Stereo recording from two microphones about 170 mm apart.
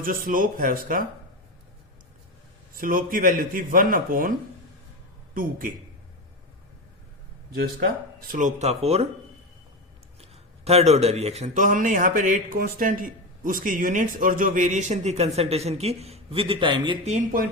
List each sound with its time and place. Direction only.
0.0 s speech: 55° right (ahead or behind)
2.7 s a man's voice: 55° right (ahead or behind)
8.3 s a man's voice: 45° right (ahead or behind)
10.2 s a man's voice: 35° right (ahead or behind)